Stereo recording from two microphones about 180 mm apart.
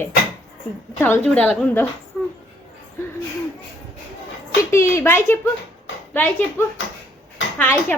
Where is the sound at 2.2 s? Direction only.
10° left (ahead or behind).